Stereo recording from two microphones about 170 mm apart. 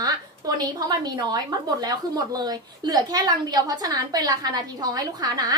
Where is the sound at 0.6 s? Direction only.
25° right (ahead or behind).